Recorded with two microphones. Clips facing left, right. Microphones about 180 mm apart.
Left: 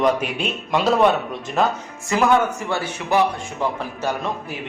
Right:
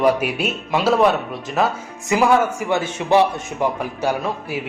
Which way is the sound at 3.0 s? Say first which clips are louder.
Right 3 dB; 25° right (ahead or behind).